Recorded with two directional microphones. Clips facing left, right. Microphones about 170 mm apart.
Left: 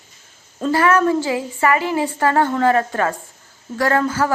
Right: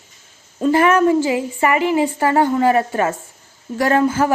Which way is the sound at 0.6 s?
20° right (ahead or behind).